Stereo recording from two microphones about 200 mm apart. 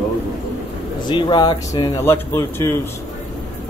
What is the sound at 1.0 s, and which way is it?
Speech, 25° left (ahead or behind).